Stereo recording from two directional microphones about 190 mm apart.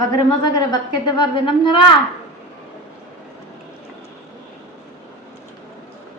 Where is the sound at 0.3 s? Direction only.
20° left (ahead or behind).